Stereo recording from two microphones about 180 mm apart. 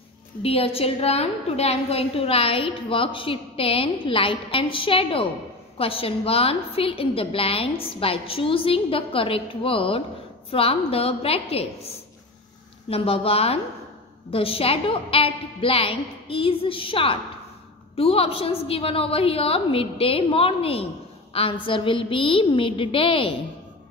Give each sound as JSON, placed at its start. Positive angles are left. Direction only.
{"t": 0.4, "sound": "a woman's voice", "side_deg": 30}
{"t": 12.9, "sound": "a woman's voice", "side_deg": 30}